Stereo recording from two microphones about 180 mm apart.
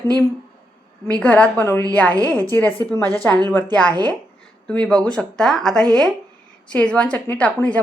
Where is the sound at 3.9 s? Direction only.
20° right (ahead or behind).